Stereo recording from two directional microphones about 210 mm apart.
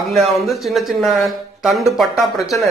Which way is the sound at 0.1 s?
Centre (ahead or behind).